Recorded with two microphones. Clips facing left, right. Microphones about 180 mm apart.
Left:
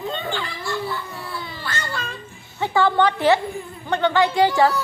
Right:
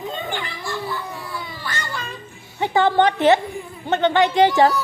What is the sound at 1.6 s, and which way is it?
Cat, 15° right (ahead or behind).